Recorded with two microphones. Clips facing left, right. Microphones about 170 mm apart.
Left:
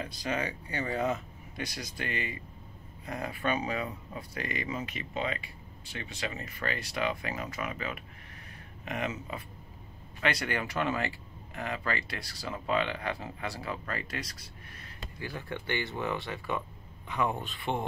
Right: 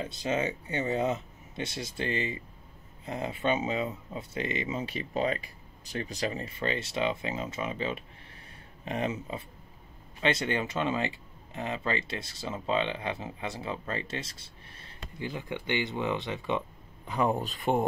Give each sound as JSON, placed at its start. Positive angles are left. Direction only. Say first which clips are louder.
{"t": 0.0, "sound": "speech", "louder": "right 3 dB", "side_deg": -25}
{"t": 17.1, "sound": "speech", "louder": "right 4 dB", "side_deg": -35}